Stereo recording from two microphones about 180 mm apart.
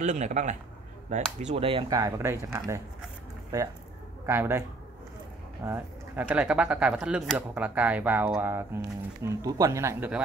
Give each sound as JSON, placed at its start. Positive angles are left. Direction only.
{"t": 0.0, "sound": "a man's voice", "side_deg": -45}
{"t": 5.7, "sound": "speech", "side_deg": -10}